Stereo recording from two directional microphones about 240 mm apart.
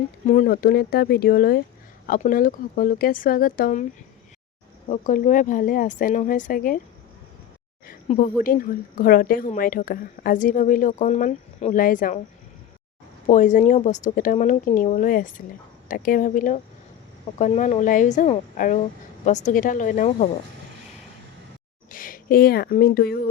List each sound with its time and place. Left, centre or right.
0.3 s a woman's voice: left
4.9 s a woman's voice: left
7.9 s a woman's voice: left
13.2 s a woman's voice: left
21.9 s speech: left